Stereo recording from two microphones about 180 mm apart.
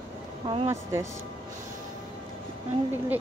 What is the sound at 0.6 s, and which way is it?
Speech, 15° right (ahead or behind).